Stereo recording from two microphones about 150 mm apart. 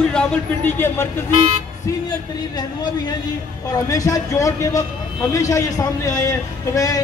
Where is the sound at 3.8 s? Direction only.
20° left (ahead or behind).